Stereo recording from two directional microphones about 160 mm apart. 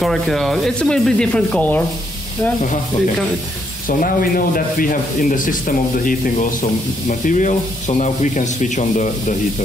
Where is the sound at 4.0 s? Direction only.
60° left (ahead or behind).